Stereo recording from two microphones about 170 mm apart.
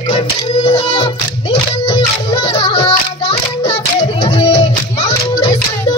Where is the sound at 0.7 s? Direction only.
30° left (ahead or behind).